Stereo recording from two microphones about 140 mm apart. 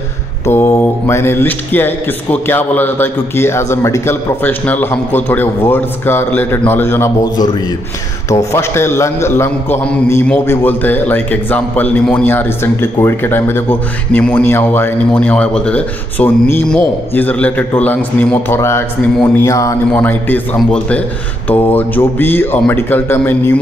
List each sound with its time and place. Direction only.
0.5 s a man's voice: 15° left (ahead or behind)
8.5 s a man's voice: 20° left (ahead or behind)
19.9 s a man's voice: 15° left (ahead or behind)